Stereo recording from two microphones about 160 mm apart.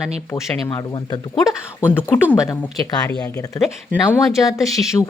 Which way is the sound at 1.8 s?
15° left (ahead or behind).